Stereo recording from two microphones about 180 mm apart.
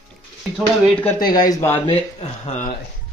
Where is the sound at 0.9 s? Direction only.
10° left (ahead or behind).